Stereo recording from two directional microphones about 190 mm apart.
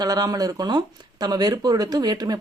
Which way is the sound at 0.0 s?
20° right (ahead or behind).